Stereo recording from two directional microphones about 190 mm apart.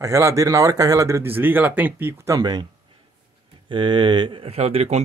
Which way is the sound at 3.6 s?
25° right (ahead or behind).